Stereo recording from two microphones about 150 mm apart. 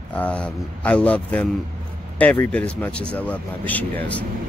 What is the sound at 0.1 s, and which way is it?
Speech, 10° left (ahead or behind).